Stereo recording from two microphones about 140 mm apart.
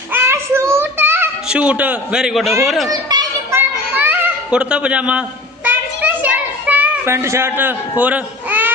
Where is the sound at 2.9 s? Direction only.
30° right (ahead or behind).